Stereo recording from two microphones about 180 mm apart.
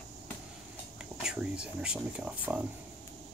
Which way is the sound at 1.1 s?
5° right (ahead or behind).